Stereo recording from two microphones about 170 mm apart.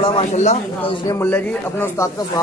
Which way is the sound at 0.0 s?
35° left (ahead or behind).